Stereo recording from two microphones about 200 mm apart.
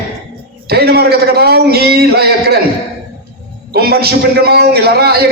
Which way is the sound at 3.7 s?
50° right (ahead or behind).